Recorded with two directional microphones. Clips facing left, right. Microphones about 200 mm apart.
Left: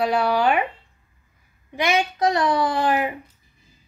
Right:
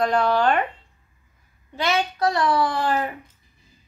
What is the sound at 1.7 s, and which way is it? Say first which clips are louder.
A child's voice: left 2 dB; 15° left (ahead or behind).